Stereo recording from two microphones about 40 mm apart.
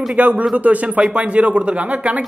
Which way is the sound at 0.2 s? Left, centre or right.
Right.